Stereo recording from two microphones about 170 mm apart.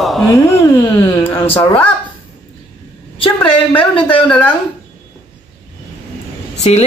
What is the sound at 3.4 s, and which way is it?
Speech, 10° left (ahead or behind).